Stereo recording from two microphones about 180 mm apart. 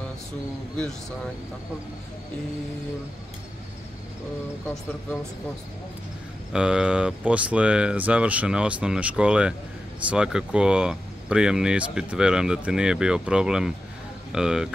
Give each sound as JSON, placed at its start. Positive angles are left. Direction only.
{"t": 6.5, "sound": "speech", "side_deg": -5}